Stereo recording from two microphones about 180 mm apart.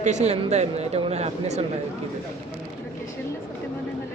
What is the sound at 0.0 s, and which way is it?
Speech, 40° right (ahead or behind).